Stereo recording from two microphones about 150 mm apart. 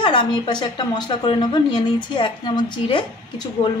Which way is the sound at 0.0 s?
35° left (ahead or behind).